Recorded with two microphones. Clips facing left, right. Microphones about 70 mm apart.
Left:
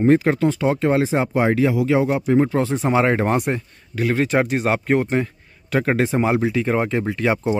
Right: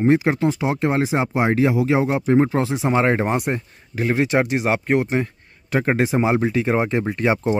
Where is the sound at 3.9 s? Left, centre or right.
Centre.